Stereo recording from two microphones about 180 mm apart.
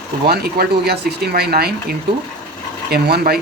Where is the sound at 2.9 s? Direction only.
60° right (ahead or behind).